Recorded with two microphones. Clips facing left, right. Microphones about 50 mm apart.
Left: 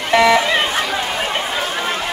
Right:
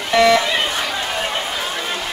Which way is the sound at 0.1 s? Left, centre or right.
Left.